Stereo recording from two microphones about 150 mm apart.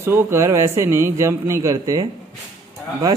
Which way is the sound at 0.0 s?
15° right (ahead or behind).